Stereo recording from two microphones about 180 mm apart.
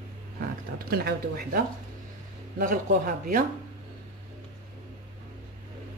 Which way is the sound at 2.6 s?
50° right (ahead or behind).